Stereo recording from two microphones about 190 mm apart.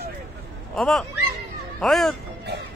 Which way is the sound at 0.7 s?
Centre (ahead or behind).